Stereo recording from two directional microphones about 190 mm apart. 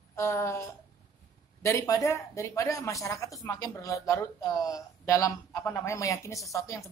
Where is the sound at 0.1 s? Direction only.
15° left (ahead or behind).